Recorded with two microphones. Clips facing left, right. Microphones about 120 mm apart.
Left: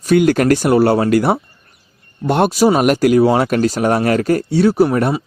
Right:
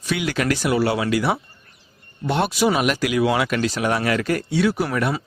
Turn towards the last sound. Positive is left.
turn(degrees=35)  # may be behind; listen again after turning